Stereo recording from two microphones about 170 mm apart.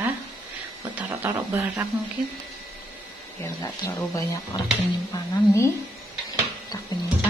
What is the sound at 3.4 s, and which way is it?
Speech, 20° left (ahead or behind).